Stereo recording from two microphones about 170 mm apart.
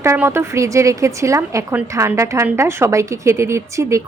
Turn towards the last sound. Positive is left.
turn(degrees=-15)  # may be behind; listen again after turning